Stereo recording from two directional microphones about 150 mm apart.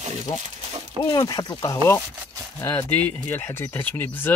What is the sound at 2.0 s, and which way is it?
Speech, 25° right (ahead or behind).